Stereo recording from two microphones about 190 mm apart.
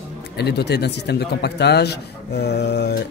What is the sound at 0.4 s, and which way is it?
Speech, 60° left (ahead or behind).